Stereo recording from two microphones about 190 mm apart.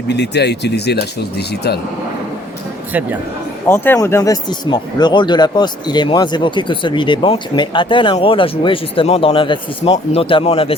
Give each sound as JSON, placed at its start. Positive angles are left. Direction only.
{"t": 0.1, "sound": "speech", "side_deg": 65}
{"t": 2.9, "sound": "speech", "side_deg": -10}
{"t": 3.7, "sound": "speech", "side_deg": 15}